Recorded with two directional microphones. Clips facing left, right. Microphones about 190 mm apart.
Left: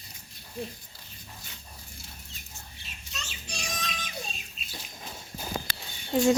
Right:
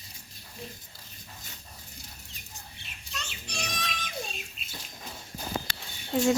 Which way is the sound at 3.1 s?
60° right (ahead or behind).